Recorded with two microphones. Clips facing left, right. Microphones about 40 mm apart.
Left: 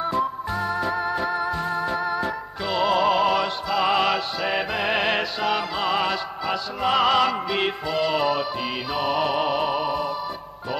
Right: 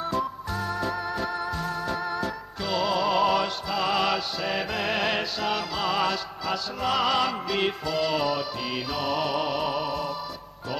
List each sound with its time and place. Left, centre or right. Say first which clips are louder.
0.0 s music: left 4 dB; centre